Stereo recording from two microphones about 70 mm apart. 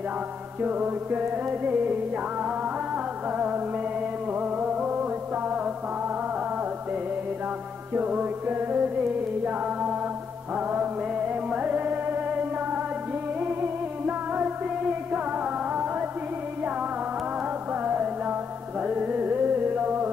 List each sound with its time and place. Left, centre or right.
0.6 s music: right
3.3 s music: right
7.9 s music: right
17.8 s music: right